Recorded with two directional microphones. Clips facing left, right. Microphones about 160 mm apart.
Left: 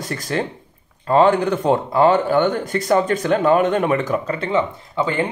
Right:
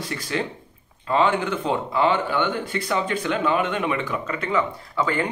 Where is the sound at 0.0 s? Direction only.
45° left (ahead or behind).